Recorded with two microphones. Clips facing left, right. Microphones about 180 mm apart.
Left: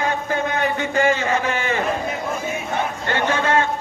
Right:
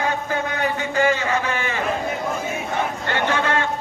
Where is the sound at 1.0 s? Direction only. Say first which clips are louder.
Left 1 dB; 45° left (ahead or behind).